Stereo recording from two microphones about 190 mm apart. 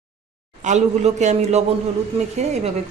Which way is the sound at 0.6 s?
35° right (ahead or behind).